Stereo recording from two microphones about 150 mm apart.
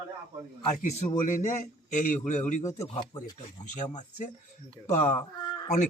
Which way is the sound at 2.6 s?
25° left (ahead or behind).